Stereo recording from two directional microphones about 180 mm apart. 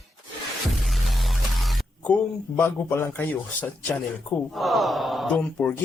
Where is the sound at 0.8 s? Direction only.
Centre (ahead or behind).